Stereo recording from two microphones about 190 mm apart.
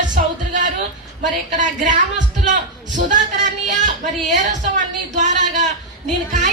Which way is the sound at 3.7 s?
40° right (ahead or behind).